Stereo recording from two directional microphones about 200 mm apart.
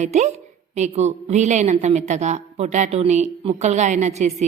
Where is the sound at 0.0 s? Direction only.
35° right (ahead or behind).